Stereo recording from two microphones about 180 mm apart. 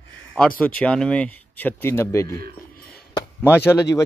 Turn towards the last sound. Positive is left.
turn(degrees=15)  # may be behind; listen again after turning